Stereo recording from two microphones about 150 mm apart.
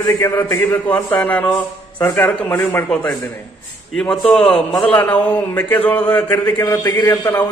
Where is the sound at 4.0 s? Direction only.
5° left (ahead or behind).